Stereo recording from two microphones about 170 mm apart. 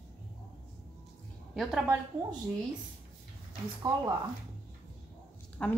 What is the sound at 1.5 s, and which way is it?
Speech, centre (ahead or behind).